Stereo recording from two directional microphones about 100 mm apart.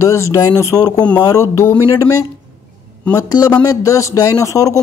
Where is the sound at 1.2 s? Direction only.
30° left (ahead or behind).